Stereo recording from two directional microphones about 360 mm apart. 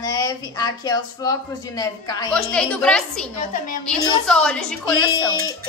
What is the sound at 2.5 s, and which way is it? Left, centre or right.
Speech, centre.